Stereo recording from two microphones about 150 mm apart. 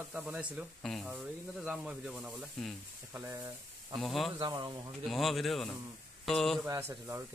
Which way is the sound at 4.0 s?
Centre (ahead or behind).